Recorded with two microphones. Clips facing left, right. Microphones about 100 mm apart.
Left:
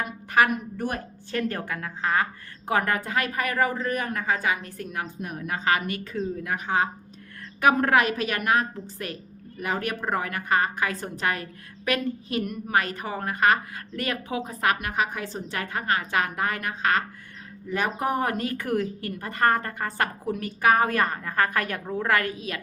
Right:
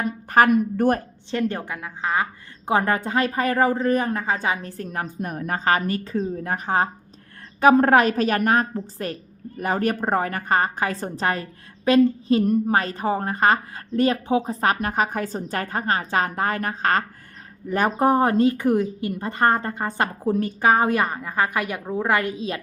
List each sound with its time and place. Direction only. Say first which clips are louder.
0.0 s speech: right 5 dB; 40° right (ahead or behind)
1.3 s speech: right 3 dB; 20° right (ahead or behind)
2.6 s a woman's voice: right 4 dB; 25° right (ahead or behind)